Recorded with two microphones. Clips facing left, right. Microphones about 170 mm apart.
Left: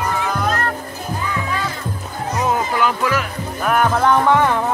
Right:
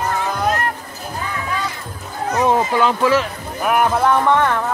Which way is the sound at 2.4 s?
30° right (ahead or behind).